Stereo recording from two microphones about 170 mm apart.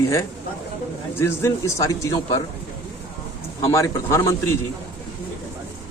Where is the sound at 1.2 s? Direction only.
15° left (ahead or behind).